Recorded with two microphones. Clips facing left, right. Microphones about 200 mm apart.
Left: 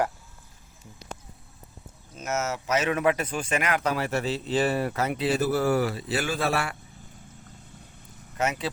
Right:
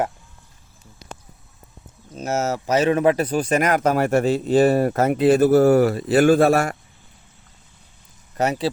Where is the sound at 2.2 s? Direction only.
35° right (ahead or behind).